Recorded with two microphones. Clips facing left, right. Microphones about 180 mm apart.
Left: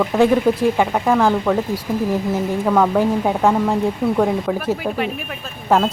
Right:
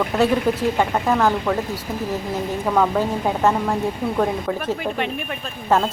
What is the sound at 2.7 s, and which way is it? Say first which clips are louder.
Speech: left 3 dB; 10° left (ahead or behind).